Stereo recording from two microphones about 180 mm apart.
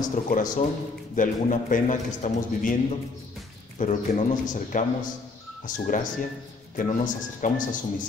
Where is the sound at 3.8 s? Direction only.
40° left (ahead or behind).